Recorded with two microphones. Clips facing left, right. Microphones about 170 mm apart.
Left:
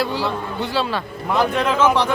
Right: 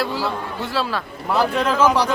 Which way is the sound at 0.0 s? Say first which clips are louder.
Left 1 dB; centre (ahead or behind).